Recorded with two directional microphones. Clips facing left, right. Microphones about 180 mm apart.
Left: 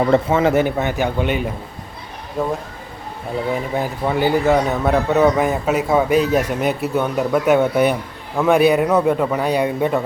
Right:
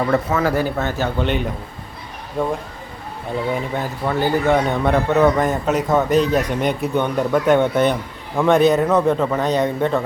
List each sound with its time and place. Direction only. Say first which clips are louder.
0.0 s a man's voice: left 3 dB; 25° left (ahead or behind); by 10.0 s 10° left (ahead or behind)